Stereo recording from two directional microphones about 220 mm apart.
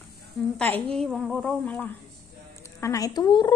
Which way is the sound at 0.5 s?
10° left (ahead or behind).